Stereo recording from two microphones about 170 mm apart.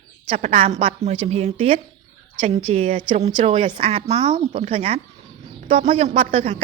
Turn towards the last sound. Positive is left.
turn(degrees=-35)  # may be behind; listen again after turning